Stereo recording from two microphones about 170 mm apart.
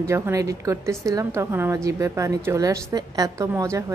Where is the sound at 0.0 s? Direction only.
15° right (ahead or behind).